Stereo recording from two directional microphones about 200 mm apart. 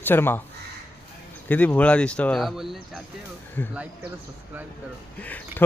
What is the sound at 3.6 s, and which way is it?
Speech, 10° left (ahead or behind).